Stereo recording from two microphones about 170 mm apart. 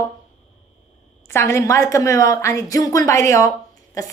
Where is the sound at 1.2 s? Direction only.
15° left (ahead or behind).